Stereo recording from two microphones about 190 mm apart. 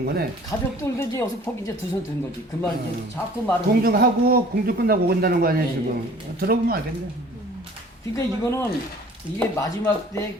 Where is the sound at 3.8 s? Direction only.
50° right (ahead or behind).